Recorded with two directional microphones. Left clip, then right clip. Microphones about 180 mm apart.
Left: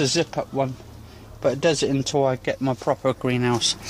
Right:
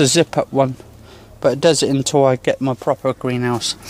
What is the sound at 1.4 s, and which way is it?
Speech, 35° right (ahead or behind).